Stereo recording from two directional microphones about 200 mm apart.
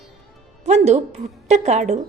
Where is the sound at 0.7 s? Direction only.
35° right (ahead or behind).